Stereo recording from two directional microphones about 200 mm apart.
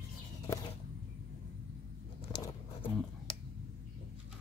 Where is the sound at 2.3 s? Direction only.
20° left (ahead or behind).